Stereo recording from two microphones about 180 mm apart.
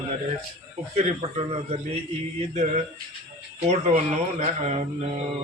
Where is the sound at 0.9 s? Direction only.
35° right (ahead or behind).